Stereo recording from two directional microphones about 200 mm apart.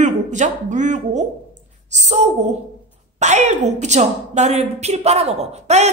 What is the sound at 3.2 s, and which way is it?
A woman's voice, 35° right (ahead or behind).